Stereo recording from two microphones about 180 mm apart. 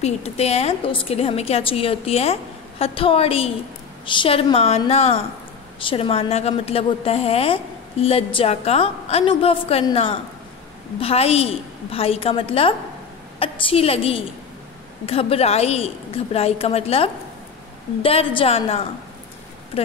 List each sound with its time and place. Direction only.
0.0 s a woman's voice: 35° left (ahead or behind)